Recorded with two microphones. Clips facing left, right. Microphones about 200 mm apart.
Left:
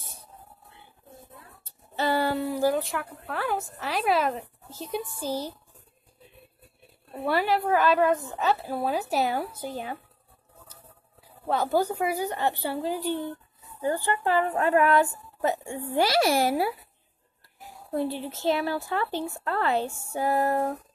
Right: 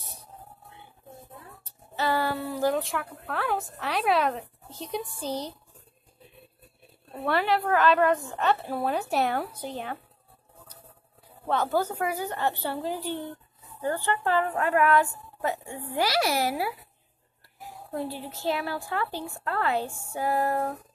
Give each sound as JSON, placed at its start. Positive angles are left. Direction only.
{"t": 2.0, "sound": "a sound", "side_deg": 25}
{"t": 2.7, "sound": "a woman's voice", "side_deg": 0}
{"t": 7.2, "sound": "a woman's voice", "side_deg": 5}
{"t": 11.4, "sound": "a woman's voice", "side_deg": 10}
{"t": 14.6, "sound": "a child's voice", "side_deg": 30}
{"t": 18.3, "sound": "a child's voice", "side_deg": 20}